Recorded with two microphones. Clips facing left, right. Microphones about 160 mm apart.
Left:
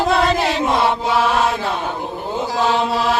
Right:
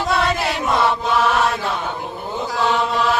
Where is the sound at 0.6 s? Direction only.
20° left (ahead or behind).